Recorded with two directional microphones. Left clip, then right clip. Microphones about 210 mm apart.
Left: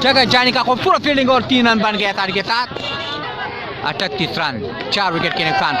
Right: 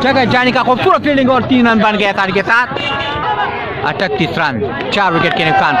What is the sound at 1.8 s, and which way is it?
Speech, 5° left (ahead or behind).